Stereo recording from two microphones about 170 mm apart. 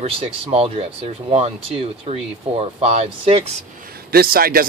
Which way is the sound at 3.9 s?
60° right (ahead or behind).